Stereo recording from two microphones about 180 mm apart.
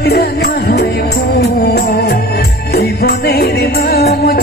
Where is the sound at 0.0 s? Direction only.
65° left (ahead or behind).